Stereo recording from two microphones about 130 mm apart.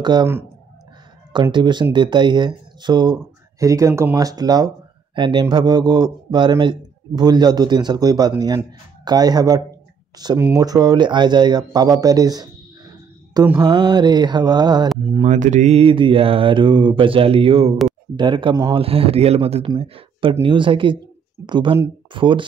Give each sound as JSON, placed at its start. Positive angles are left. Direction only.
{"t": 0.0, "sound": "speech", "side_deg": -35}
{"t": 1.3, "sound": "speech", "side_deg": -35}
{"t": 13.6, "sound": "speech", "side_deg": -35}
{"t": 15.2, "sound": "mantra", "side_deg": -70}
{"t": 18.1, "sound": "speech", "side_deg": -35}
{"t": 18.7, "sound": "mantra", "side_deg": -45}
{"t": 19.8, "sound": "speech", "side_deg": -45}